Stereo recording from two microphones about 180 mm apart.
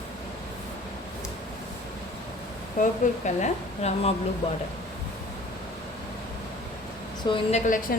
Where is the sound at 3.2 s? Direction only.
40° left (ahead or behind).